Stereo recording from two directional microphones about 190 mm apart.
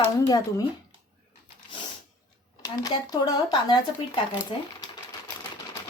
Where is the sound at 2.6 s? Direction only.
20° left (ahead or behind).